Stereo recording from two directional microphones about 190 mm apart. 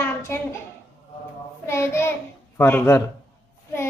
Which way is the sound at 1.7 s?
15° left (ahead or behind).